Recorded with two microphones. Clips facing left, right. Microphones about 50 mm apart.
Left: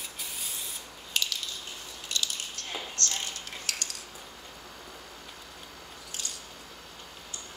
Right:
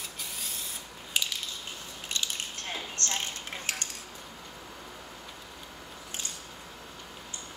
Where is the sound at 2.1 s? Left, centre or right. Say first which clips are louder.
Even; right.